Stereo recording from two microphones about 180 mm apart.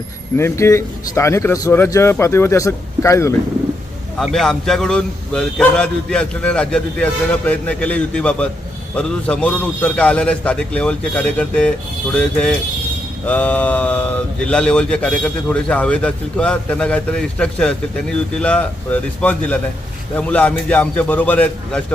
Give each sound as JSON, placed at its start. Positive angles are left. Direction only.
{"t": 0.3, "sound": "speech", "side_deg": 15}
{"t": 4.2, "sound": "a man's voice", "side_deg": 0}